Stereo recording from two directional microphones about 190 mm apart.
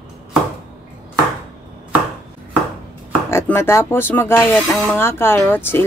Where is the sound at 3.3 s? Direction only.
10° left (ahead or behind).